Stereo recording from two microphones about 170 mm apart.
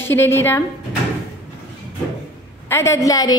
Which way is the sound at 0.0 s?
15° left (ahead or behind).